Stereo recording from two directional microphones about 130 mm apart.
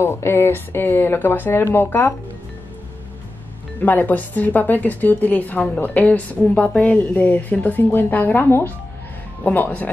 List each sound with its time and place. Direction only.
0.0 s a woman's voice: 20° left (ahead or behind)
3.8 s a woman's voice: 15° left (ahead or behind)